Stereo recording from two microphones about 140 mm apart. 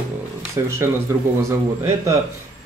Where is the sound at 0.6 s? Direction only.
25° right (ahead or behind).